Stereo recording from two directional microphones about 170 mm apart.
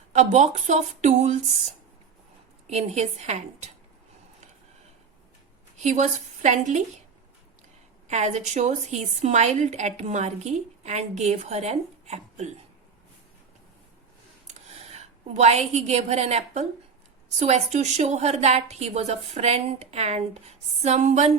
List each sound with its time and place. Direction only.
0.1 s speech: 45° right (ahead or behind)
2.6 s a woman's voice: 40° right (ahead or behind)
5.7 s speech: 45° right (ahead or behind)
8.0 s a woman's voice: 40° right (ahead or behind)
14.4 s a woman's voice: 40° right (ahead or behind)